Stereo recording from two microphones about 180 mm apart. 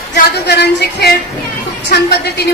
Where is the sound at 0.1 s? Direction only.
70° left (ahead or behind).